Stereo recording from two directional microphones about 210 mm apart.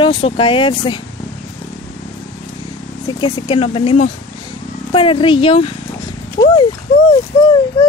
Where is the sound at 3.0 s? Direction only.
25° left (ahead or behind).